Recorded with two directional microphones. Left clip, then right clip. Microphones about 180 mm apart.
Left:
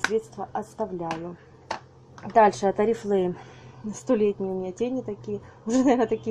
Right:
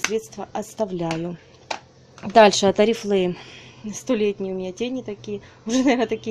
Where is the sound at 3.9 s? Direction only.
10° right (ahead or behind).